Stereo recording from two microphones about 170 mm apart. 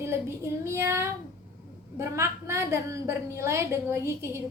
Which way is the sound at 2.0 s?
15° right (ahead or behind).